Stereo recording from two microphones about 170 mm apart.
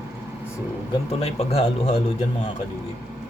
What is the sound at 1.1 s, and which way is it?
Speech, 35° left (ahead or behind).